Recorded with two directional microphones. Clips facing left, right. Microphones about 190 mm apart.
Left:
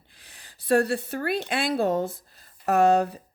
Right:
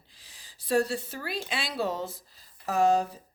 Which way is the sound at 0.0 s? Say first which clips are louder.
Left 4 dB; 60° left (ahead or behind).